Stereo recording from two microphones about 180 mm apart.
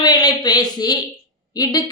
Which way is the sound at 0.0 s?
20° left (ahead or behind).